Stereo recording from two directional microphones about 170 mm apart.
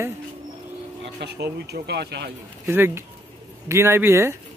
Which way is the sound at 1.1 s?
80° right.